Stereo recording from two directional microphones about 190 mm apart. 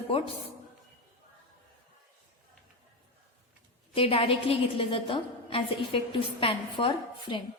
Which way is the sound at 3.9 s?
30° left (ahead or behind).